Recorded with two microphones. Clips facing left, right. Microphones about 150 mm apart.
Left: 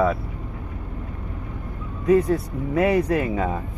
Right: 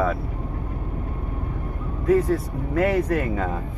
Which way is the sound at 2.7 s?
5° left (ahead or behind).